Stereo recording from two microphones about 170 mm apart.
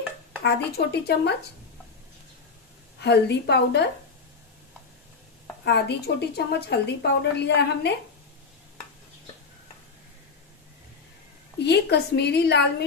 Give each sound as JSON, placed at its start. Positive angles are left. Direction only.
{"t": 0.4, "sound": "a woman's voice", "side_deg": 75}
{"t": 3.0, "sound": "a woman's voice", "side_deg": 80}
{"t": 5.6, "sound": "a woman's voice", "side_deg": 80}
{"t": 11.6, "sound": "a woman's voice", "side_deg": 75}